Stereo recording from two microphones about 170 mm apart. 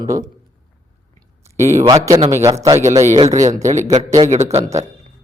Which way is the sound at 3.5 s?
45° right (ahead or behind).